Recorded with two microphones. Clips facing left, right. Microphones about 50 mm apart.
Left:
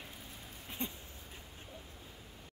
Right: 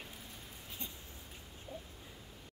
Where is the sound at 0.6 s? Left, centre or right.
Left.